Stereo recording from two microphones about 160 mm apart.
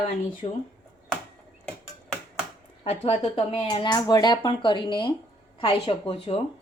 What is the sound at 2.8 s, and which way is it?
Speech, 40° left (ahead or behind).